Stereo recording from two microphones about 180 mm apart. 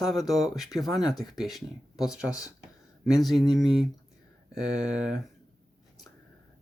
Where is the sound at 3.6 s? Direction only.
Centre (ahead or behind).